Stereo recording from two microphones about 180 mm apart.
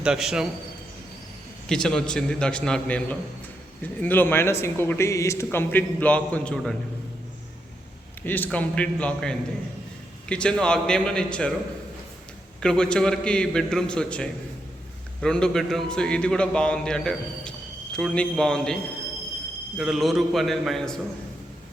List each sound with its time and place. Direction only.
0.0 s a man's voice: 5° right (ahead or behind)
1.7 s a man's voice: 5° left (ahead or behind)
8.2 s a man's voice: 10° left (ahead or behind)
12.5 s a man's voice: 5° left (ahead or behind)